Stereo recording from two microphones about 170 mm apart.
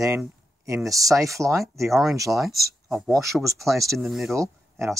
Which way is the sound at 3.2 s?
20° right (ahead or behind).